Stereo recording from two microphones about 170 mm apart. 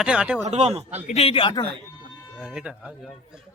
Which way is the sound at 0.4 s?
40° right (ahead or behind).